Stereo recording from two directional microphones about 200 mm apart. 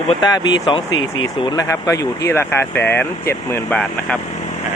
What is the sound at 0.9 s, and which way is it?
Speech, 80° left.